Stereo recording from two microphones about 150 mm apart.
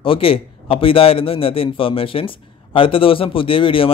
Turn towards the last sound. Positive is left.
turn(degrees=35)  # may be behind; listen again after turning